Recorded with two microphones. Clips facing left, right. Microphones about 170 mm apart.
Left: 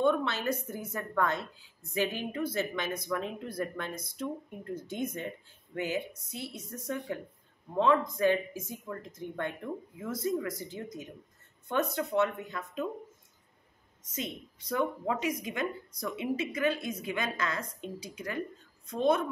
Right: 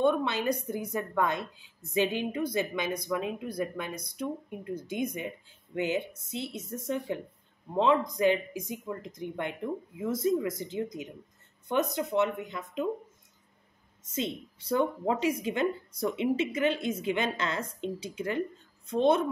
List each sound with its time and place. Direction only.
0.0 s a woman's voice: 15° right (ahead or behind)
14.1 s a woman's voice: 30° right (ahead or behind)